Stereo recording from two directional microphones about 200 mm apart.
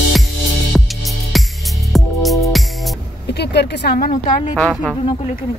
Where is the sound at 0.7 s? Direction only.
Centre (ahead or behind).